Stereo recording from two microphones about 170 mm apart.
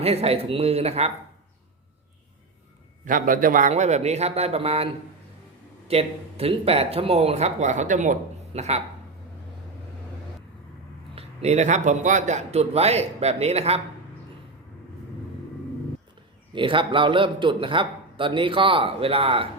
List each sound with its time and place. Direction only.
0.0 s a man's voice: 35° right (ahead or behind)
3.0 s a man's voice: 50° right (ahead or behind); by 4.9 s 35° right (ahead or behind)
5.9 s a man's voice: 35° right (ahead or behind)
11.1 s a man's voice: 35° right (ahead or behind)
16.5 s a man's voice: 30° right (ahead or behind)